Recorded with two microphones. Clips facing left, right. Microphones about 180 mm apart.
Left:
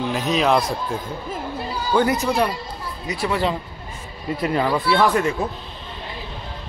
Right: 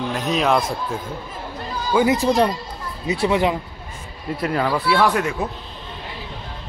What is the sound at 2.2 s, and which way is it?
Speech, 30° right (ahead or behind).